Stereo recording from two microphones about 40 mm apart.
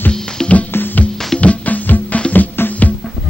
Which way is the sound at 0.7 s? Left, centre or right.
Left.